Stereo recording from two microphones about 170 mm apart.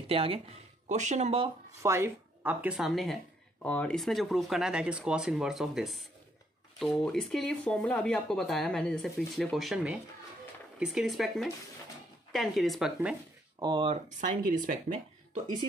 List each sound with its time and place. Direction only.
0.1 s speech: 35° right (ahead or behind)
1.8 s speech: 15° right (ahead or behind); by 13.1 s centre (ahead or behind)
13.6 s speech: 30° right (ahead or behind)
14.0 s speech: 50° right (ahead or behind)